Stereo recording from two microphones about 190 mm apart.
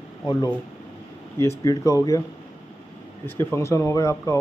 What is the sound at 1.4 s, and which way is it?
Speech, 15° left (ahead or behind).